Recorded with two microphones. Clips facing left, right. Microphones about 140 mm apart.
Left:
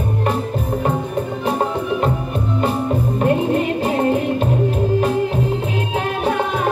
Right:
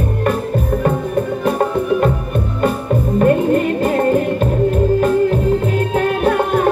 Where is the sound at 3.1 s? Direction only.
50° right (ahead or behind).